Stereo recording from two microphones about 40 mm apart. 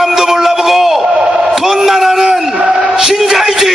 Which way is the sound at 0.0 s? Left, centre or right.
Centre.